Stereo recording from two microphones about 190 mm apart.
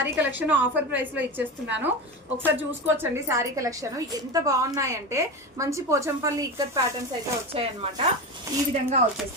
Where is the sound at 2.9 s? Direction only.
15° right (ahead or behind).